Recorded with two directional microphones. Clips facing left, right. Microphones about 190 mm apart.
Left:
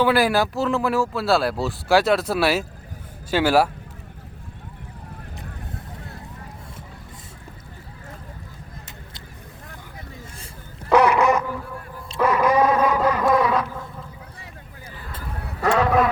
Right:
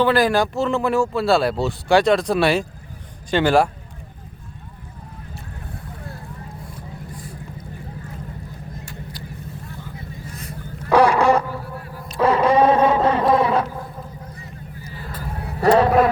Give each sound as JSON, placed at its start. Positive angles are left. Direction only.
{"t": 0.0, "sound": "speech", "side_deg": 10}
{"t": 10.2, "sound": "vehicle", "side_deg": 30}
{"t": 10.9, "sound": "a sound", "side_deg": -30}
{"t": 15.6, "sound": "vehicle", "side_deg": -30}